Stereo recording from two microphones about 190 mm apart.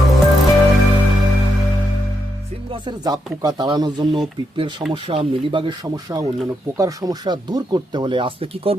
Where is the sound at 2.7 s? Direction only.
25° right (ahead or behind).